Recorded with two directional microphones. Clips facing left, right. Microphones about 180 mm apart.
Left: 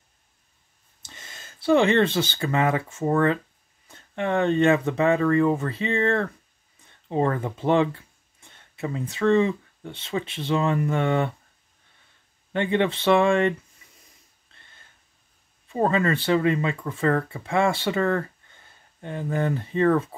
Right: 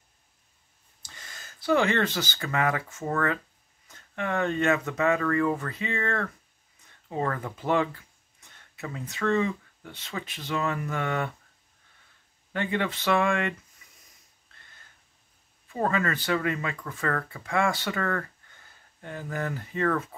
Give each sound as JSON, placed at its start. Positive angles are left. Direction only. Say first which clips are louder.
{"t": 1.0, "sound": "speech", "louder": "left 2 dB", "side_deg": 25}
{"t": 12.5, "sound": "speech", "louder": "left 6 dB", "side_deg": 25}
{"t": 14.5, "sound": "a sound", "louder": "left 1 dB", "side_deg": 25}
{"t": 15.7, "sound": "speech", "louder": "left 5 dB", "side_deg": 25}